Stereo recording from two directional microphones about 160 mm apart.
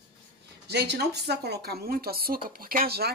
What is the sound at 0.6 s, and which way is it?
Speech, 90° right.